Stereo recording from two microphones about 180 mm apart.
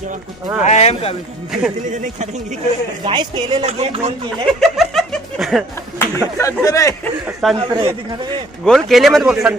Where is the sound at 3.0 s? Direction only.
25° right (ahead or behind).